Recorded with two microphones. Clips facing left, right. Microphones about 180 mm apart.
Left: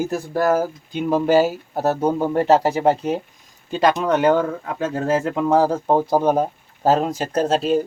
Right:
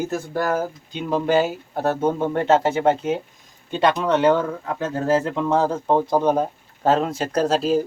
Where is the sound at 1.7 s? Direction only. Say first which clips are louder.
Left 1 dB; 35° left (ahead or behind).